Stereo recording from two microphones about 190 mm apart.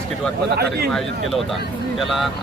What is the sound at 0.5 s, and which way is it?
Speech, 55° right (ahead or behind).